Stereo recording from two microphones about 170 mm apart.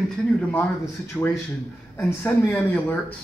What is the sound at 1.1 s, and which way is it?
Speech, 10° left (ahead or behind).